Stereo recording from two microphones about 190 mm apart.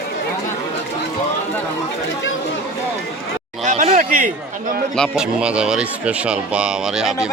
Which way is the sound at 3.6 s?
35° right (ahead or behind).